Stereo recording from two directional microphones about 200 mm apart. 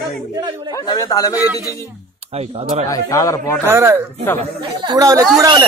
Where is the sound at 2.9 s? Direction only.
15° left (ahead or behind).